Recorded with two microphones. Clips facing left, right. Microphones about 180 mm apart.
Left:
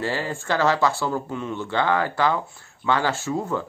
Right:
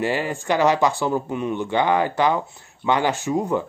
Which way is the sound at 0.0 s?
15° right (ahead or behind).